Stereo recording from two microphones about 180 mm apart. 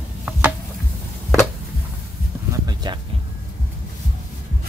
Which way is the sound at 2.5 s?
20° right (ahead or behind).